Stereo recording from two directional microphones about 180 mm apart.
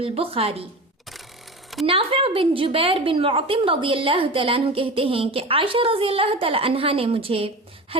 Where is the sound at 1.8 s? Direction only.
30° right (ahead or behind).